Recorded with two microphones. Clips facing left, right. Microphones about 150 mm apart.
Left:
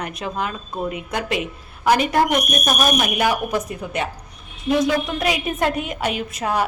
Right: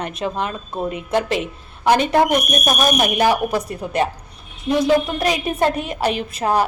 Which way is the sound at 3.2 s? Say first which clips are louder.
Right 3 dB; 35° right (ahead or behind).